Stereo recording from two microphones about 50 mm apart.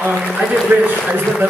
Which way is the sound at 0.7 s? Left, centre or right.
Right.